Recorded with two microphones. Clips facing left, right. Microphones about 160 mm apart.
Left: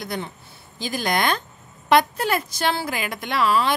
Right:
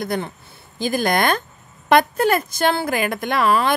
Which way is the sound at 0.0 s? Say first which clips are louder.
Right 6 dB; 50° right (ahead or behind).